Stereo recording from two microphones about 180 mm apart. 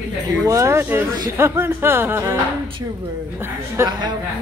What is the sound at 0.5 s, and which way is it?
Speech, 15° right (ahead or behind).